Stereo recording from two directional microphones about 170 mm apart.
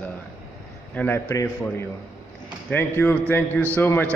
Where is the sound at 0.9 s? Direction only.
15° left (ahead or behind).